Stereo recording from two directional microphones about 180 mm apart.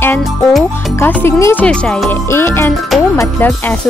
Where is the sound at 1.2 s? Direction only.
15° left (ahead or behind).